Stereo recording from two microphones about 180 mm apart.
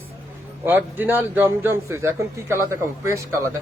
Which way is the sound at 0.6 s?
10° right (ahead or behind).